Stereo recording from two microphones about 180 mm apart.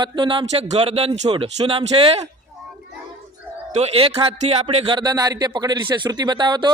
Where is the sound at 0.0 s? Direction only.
25° right (ahead or behind).